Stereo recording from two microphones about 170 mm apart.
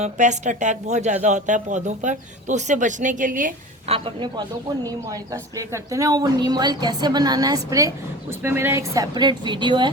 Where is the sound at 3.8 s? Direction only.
35° right (ahead or behind).